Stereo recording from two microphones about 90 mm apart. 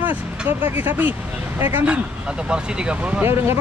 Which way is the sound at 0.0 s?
20° right (ahead or behind).